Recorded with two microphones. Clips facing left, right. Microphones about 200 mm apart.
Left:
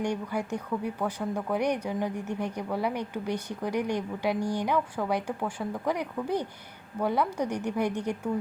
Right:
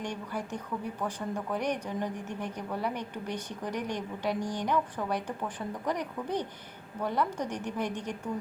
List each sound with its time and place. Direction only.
0.0 s speech: 10° left (ahead or behind)